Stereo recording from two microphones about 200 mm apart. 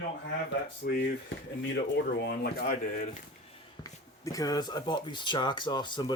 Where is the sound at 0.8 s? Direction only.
50° left (ahead or behind).